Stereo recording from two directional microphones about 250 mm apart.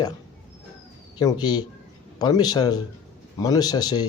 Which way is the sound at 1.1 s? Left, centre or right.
Centre.